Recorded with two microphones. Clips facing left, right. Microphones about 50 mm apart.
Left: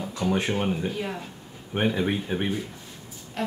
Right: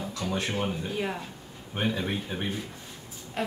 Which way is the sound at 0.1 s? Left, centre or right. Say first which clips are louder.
Left 7 dB; left.